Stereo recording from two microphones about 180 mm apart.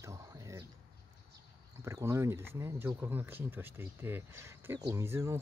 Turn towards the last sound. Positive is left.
turn(degrees=-15)  # may be behind; listen again after turning